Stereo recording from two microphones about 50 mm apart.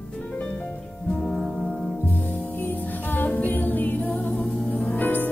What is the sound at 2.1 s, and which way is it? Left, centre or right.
Music, left.